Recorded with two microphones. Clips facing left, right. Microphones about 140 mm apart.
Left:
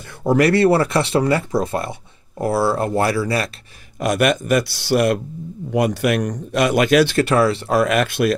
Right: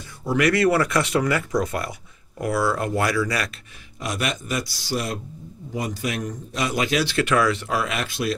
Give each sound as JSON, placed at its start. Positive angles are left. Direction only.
{"t": 0.4, "sound": "speech", "side_deg": 30}
{"t": 4.0, "sound": "a man's voice", "side_deg": 55}
{"t": 7.2, "sound": "speech", "side_deg": 35}
{"t": 7.7, "sound": "a man's voice", "side_deg": 50}